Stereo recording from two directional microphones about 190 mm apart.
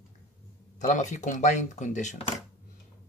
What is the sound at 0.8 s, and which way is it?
Speech, 40° left (ahead or behind).